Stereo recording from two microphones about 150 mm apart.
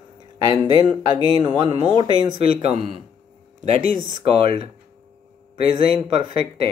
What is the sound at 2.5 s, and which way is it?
Speech, 45° right (ahead or behind).